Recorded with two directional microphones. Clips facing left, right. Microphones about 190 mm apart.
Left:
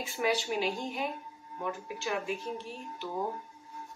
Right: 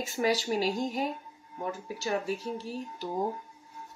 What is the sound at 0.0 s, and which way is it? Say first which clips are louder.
Speech: right 2 dB; 40° right (ahead or behind).